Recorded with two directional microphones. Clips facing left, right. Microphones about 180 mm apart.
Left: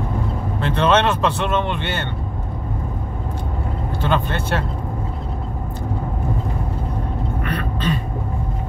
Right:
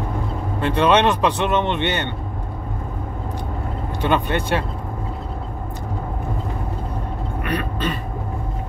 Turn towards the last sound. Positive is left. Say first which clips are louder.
# even
turn(degrees=-15)  # may be behind; listen again after turning